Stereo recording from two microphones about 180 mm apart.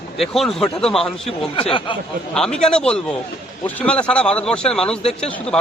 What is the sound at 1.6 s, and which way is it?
Speech, 30° left (ahead or behind).